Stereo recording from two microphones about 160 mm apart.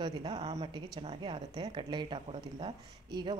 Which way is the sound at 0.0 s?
30° right (ahead or behind).